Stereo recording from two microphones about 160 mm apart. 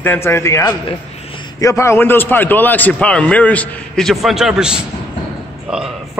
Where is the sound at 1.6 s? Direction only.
20° left (ahead or behind).